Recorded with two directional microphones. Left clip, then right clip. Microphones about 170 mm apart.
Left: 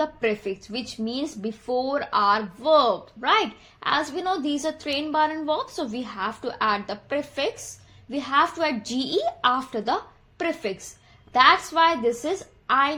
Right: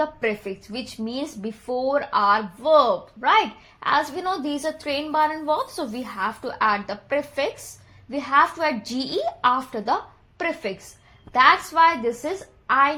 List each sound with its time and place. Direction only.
0.0 s a woman's voice: 20° right (ahead or behind)